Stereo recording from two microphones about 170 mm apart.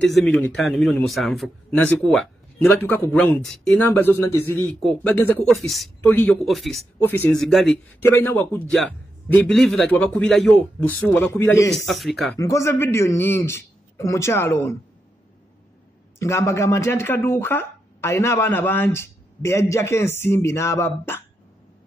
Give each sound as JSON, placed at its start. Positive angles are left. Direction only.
{"t": 0.0, "sound": "a man's voice", "side_deg": 5}
{"t": 5.9, "sound": "speech", "side_deg": 10}
{"t": 6.4, "sound": "a man's voice", "side_deg": 0}
{"t": 7.0, "sound": "a man's voice", "side_deg": 10}
{"t": 8.1, "sound": "a man's voice", "side_deg": 15}
{"t": 11.9, "sound": "a man's voice", "side_deg": 0}
{"t": 12.4, "sound": "speech", "side_deg": 20}
{"t": 16.2, "sound": "speech", "side_deg": 15}